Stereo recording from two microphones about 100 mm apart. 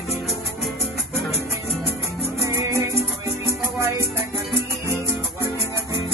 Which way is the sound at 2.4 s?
30° right (ahead or behind).